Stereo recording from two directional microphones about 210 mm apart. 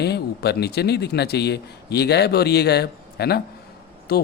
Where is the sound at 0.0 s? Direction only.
50° left (ahead or behind).